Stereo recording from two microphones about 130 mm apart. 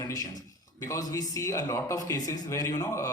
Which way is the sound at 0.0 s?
25° left (ahead or behind).